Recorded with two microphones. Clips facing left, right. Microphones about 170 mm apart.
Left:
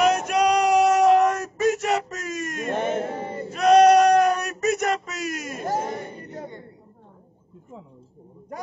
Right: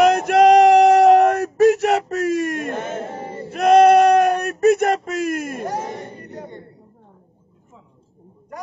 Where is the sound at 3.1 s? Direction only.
30° right (ahead or behind).